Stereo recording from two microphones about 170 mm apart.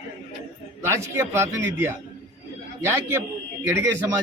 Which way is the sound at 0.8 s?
15° right (ahead or behind).